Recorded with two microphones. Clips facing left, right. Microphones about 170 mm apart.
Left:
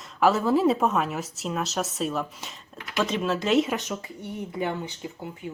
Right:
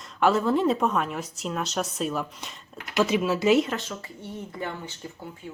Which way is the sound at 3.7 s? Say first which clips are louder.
Left 2 dB; 15° left (ahead or behind).